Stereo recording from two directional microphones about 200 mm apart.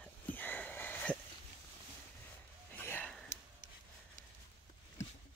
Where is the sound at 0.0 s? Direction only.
10° left (ahead or behind).